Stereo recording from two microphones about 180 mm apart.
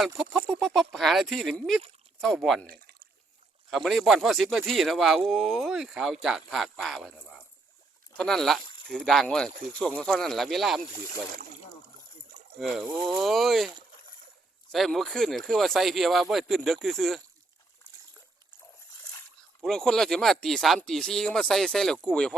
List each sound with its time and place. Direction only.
0.2 s speech: centre (ahead or behind)
3.7 s speech: centre (ahead or behind)
12.5 s speech: centre (ahead or behind)
12.9 s speech: 25° right (ahead or behind)
13.1 s speech: centre (ahead or behind)
14.7 s speech: centre (ahead or behind)
19.6 s speech: 5° left (ahead or behind)